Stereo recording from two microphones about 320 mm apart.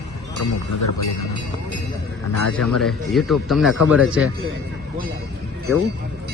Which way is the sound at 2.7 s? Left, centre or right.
Centre.